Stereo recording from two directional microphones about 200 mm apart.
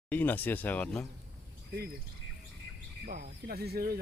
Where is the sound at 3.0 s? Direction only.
50° right (ahead or behind).